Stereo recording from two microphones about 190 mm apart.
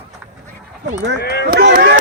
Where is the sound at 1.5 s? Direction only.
55° right (ahead or behind).